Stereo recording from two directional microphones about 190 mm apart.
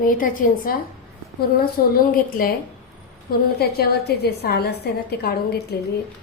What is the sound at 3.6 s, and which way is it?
A woman's voice, 55° left (ahead or behind).